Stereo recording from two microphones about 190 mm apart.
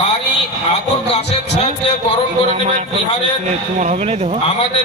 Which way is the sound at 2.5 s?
40° right (ahead or behind).